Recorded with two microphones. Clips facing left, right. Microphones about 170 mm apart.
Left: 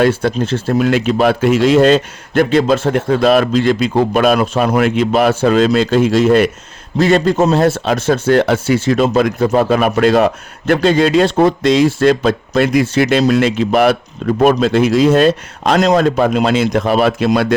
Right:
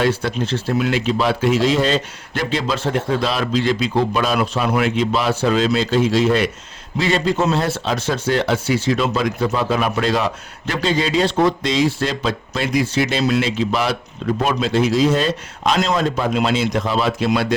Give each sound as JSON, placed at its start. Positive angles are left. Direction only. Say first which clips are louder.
{"t": 0.0, "sound": "speech", "louder": "left 6 dB", "side_deg": 50}